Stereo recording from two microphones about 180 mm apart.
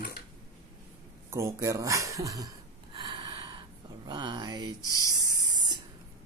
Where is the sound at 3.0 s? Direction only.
25° right (ahead or behind).